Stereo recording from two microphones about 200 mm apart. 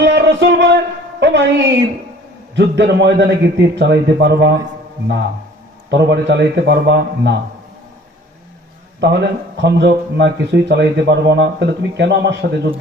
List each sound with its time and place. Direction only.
0.1 s music: 60° right (ahead or behind)
1.2 s speech: 60° right (ahead or behind)
5.9 s speech: 60° right (ahead or behind)
9.0 s speech: 60° right (ahead or behind)